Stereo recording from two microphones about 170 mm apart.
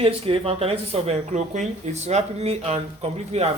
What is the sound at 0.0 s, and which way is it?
Speech, 35° right (ahead or behind).